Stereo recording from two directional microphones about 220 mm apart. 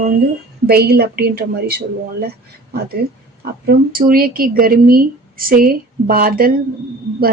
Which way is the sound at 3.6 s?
40° right (ahead or behind).